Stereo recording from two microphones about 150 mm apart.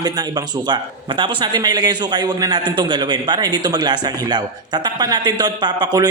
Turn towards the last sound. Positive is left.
turn(degrees=-25)  # may be behind; listen again after turning